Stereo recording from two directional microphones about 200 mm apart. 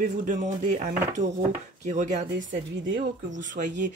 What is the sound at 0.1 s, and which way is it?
Speech, 40° right (ahead or behind).